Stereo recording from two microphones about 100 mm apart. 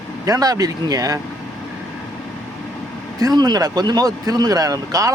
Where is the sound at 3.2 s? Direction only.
45° right (ahead or behind).